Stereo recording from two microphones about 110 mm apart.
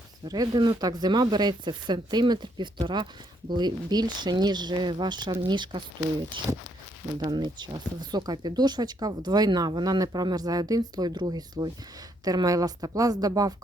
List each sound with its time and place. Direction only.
0.3 s speech: 35° right (ahead or behind)
7.2 s speech: 40° right (ahead or behind)